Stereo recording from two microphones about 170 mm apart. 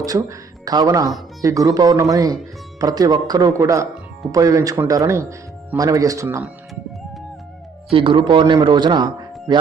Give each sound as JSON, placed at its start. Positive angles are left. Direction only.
{"t": 0.0, "sound": "a man's voice", "side_deg": -20}
{"t": 7.9, "sound": "a man's voice", "side_deg": -30}